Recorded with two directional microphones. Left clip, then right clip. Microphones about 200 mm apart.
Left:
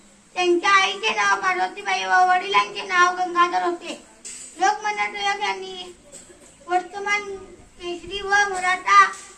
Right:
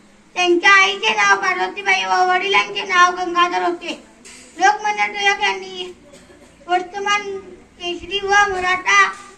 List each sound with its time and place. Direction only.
0.3 s a child's voice: 25° right (ahead or behind)